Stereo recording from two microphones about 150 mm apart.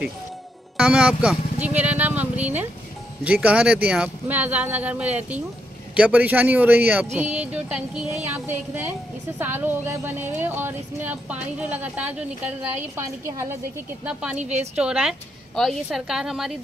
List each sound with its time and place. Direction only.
0.7 s speech: 5° right (ahead or behind)
14.4 s a woman's voice: 50° right (ahead or behind)
14.8 s a woman's voice: 5° right (ahead or behind)